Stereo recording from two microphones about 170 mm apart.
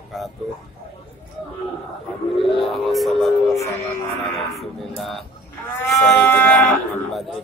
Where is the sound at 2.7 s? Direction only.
Centre (ahead or behind).